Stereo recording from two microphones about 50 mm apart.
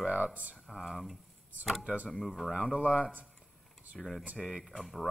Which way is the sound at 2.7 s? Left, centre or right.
Left.